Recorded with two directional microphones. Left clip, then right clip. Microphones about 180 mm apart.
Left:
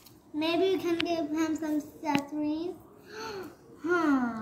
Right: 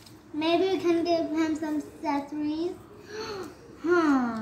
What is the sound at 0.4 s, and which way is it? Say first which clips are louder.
A child's voice: right 2 dB; 15° left (ahead or behind).